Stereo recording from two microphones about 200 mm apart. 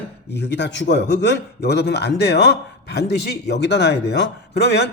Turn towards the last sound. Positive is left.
turn(degrees=55)  # may be behind; listen again after turning